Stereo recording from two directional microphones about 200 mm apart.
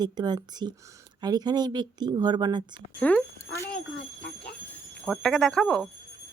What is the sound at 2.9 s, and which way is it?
Speech, 5° left (ahead or behind).